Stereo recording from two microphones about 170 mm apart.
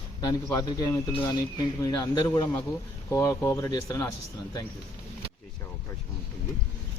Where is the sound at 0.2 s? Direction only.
20° left (ahead or behind).